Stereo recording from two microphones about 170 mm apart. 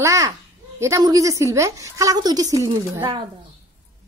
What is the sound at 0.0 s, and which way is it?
A woman's voice, 20° right (ahead or behind).